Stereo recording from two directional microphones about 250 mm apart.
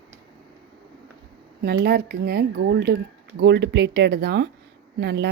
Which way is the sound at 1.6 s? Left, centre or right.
Right.